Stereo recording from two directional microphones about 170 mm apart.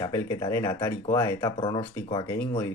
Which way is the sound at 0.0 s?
20° left (ahead or behind).